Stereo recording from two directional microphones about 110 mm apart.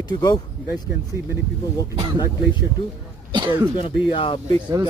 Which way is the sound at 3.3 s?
45° right (ahead or behind).